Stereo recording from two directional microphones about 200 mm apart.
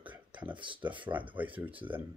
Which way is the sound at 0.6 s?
25° right (ahead or behind).